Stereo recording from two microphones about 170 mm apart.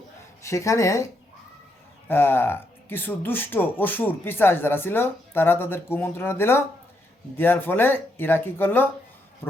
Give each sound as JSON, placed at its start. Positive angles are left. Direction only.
{"t": 0.4, "sound": "speech", "side_deg": 20}
{"t": 2.0, "sound": "speech", "side_deg": 15}
{"t": 9.4, "sound": "pig", "side_deg": 15}